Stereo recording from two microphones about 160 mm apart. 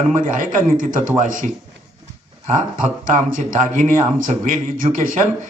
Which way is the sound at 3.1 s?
60° right (ahead or behind).